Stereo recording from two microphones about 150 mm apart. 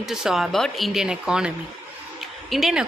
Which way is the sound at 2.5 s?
Centre (ahead or behind).